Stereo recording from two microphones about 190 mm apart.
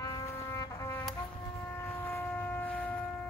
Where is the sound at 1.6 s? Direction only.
10° left (ahead or behind).